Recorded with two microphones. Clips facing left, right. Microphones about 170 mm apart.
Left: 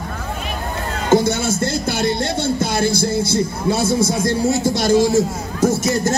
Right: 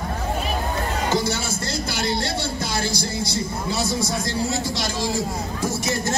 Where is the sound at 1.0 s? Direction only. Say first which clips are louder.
Left 10 dB; 55° left (ahead or behind).